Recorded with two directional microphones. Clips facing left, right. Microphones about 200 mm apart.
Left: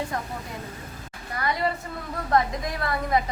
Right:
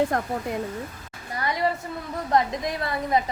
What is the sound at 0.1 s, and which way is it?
Speech, 55° right (ahead or behind).